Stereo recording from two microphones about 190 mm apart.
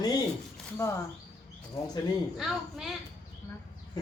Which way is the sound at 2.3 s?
Centre (ahead or behind).